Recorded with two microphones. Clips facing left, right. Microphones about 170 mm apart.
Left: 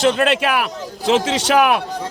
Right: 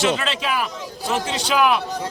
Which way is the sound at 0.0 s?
55° left (ahead or behind).